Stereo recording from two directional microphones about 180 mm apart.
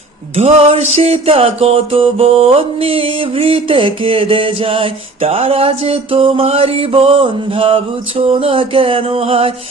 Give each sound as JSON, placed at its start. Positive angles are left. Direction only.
{"t": 0.3, "sound": "music", "side_deg": -35}